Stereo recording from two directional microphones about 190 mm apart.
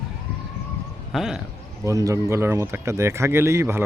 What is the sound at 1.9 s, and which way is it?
Speech, 15° right (ahead or behind).